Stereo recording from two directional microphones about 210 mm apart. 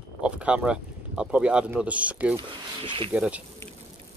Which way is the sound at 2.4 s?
25° right (ahead or behind).